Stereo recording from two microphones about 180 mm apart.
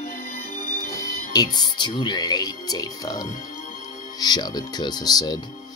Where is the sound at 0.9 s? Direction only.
20° left (ahead or behind).